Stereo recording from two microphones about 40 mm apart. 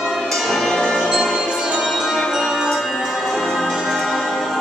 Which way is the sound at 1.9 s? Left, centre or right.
Centre.